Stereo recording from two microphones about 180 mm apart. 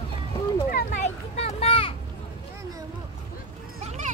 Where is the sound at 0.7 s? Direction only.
40° left (ahead or behind).